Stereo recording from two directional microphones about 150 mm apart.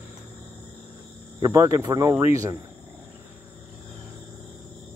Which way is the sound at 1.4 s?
15° right (ahead or behind).